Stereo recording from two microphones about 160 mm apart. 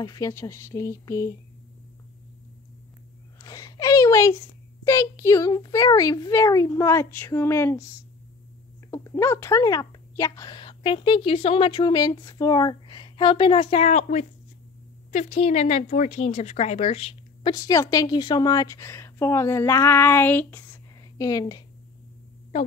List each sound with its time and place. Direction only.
0.0 s speech: 20° left (ahead or behind)
3.3 s a sound: 20° left (ahead or behind)
4.8 s speech: 20° left (ahead or behind)
8.9 s a woman's voice: 20° left (ahead or behind); by 17.6 s 35° left (ahead or behind)
17.6 s a woman's voice: 20° left (ahead or behind)